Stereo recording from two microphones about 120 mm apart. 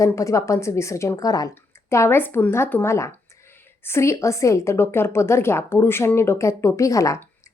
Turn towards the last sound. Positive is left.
turn(degrees=25)  # may be behind; listen again after turning